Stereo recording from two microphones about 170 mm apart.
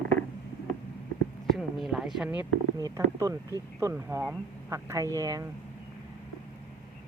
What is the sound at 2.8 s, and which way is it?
Speech, 20° right (ahead or behind).